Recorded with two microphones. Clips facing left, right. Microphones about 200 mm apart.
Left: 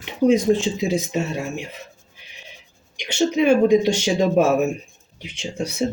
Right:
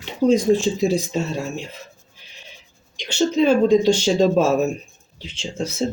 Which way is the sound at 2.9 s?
15° left (ahead or behind).